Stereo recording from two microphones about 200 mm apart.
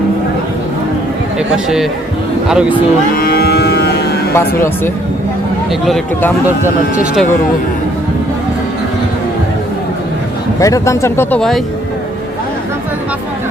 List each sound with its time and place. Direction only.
2.5 s speech: 5° right (ahead or behind)
3.2 s cattle: 50° left (ahead or behind)
4.4 s speech: 10° left (ahead or behind)
5.8 s speech: centre (ahead or behind)
10.6 s speech: 15° left (ahead or behind)